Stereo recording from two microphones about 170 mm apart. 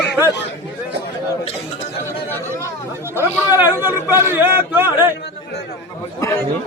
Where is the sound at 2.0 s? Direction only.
15° left (ahead or behind).